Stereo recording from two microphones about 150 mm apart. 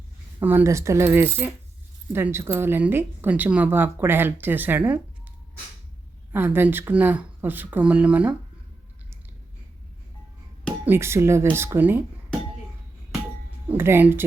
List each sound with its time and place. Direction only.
0.4 s speech: 15° right (ahead or behind)
6.3 s speech: 15° right (ahead or behind)
10.8 s speech: 15° right (ahead or behind)
13.7 s speech: 15° right (ahead or behind)